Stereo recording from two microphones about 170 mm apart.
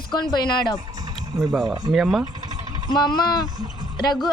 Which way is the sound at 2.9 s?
25° left (ahead or behind).